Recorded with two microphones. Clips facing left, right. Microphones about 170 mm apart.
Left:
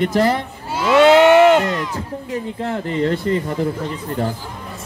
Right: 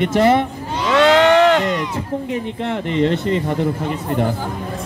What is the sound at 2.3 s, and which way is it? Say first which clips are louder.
Speech: left 2 dB; 40° left (ahead or behind).